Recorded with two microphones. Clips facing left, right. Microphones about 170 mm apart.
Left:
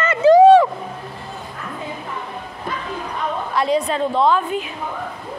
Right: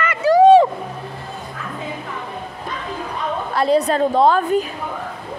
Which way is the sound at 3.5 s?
35° right (ahead or behind).